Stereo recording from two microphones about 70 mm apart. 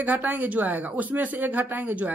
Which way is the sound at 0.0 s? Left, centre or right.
Right.